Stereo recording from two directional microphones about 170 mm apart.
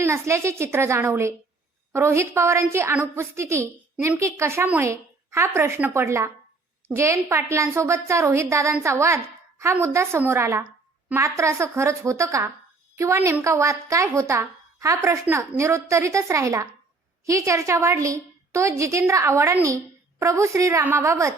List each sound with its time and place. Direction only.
0.0 s a woman's voice: 15° right (ahead or behind)